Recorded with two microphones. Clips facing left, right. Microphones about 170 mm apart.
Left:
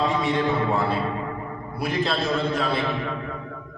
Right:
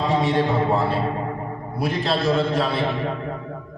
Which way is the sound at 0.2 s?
30° right (ahead or behind).